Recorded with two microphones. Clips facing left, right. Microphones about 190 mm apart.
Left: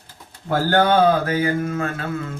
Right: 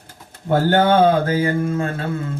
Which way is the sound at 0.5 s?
25° right (ahead or behind).